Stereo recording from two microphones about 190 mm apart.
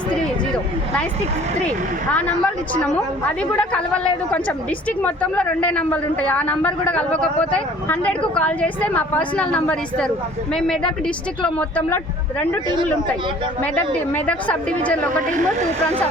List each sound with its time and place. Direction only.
2.7 s a woman's voice: 5° left (ahead or behind)
12.6 s speech: 25° right (ahead or behind)
13.7 s a woman's voice: 10° left (ahead or behind)
15.4 s speech: 40° right (ahead or behind)